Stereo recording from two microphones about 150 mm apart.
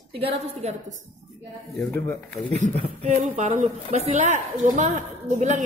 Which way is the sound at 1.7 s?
20° left (ahead or behind).